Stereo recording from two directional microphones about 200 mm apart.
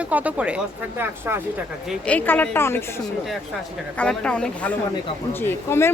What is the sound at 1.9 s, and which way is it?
Speech, 5° left (ahead or behind).